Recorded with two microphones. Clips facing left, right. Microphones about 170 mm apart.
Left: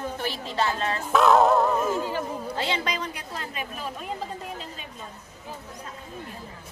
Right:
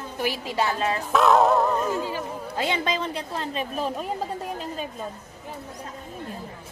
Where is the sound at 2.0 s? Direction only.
15° right (ahead or behind).